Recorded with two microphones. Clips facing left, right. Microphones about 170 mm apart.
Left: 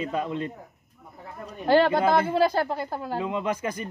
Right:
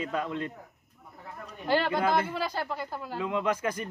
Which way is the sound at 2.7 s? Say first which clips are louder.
Left 6 dB; 30° left (ahead or behind).